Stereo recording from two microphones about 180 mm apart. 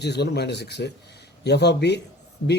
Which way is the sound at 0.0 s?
70° left (ahead or behind).